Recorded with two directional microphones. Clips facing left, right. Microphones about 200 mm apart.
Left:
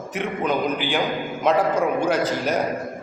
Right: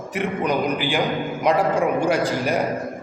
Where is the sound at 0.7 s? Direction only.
10° right (ahead or behind).